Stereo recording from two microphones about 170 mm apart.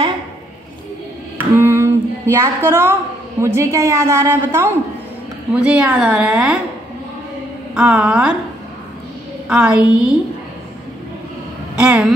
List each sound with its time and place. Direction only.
1.4 s a woman's voice: 15° right (ahead or behind)
7.7 s a woman's voice: 5° right (ahead or behind)
9.5 s a woman's voice: 5° right (ahead or behind)
11.7 s speech: 5° right (ahead or behind)